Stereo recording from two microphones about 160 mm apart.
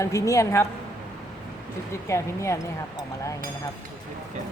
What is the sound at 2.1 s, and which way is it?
Speech, 15° left (ahead or behind).